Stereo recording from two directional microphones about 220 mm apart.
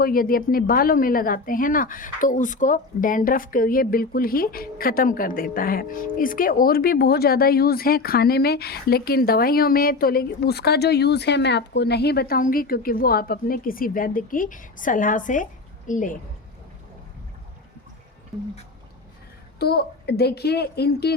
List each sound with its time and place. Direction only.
0.0 s a woman's voice: 40° left (ahead or behind)
19.5 s a woman's voice: 45° left (ahead or behind)